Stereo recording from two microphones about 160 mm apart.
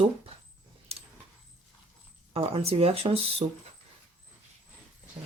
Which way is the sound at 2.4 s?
40° right (ahead or behind).